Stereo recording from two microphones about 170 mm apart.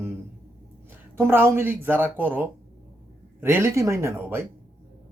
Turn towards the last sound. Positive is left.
turn(degrees=-15)  # may be behind; listen again after turning